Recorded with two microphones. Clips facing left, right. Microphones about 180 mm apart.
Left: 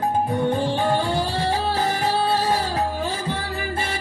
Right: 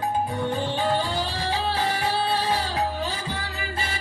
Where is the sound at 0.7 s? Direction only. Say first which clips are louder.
Left 3 dB; 50° left (ahead or behind).